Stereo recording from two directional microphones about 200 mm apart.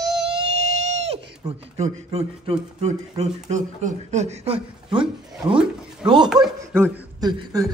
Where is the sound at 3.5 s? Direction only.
35° right (ahead or behind).